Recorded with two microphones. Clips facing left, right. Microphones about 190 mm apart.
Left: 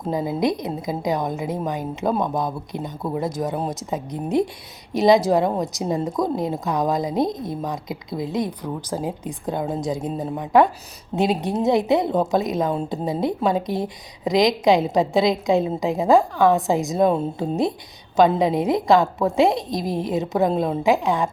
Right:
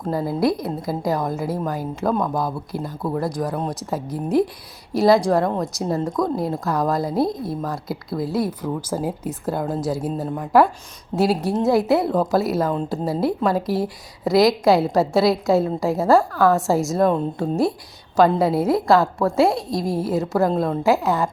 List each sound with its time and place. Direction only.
0.3 s a woman's voice: centre (ahead or behind)
14.6 s a woman's voice: 15° left (ahead or behind)
14.9 s a woman's voice: 5° right (ahead or behind)
16.6 s a woman's voice: 20° left (ahead or behind)
16.8 s a woman's voice: centre (ahead or behind)